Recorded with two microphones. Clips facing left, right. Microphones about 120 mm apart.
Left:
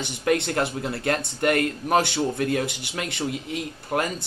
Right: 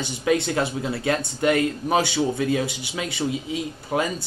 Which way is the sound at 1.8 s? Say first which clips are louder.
Left 2 dB; 5° right (ahead or behind).